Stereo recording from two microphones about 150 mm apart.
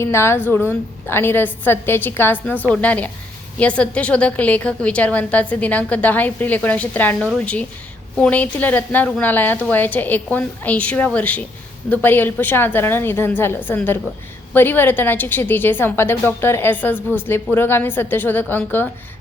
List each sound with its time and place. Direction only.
0.0 s a woman's voice: 15° left (ahead or behind)